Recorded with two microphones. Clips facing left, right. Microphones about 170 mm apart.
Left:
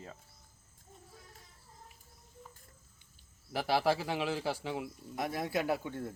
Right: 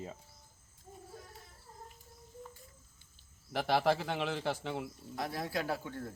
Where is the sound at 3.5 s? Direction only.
5° left (ahead or behind).